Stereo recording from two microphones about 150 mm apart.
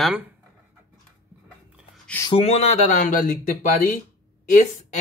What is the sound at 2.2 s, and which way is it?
Speech, 40° left (ahead or behind).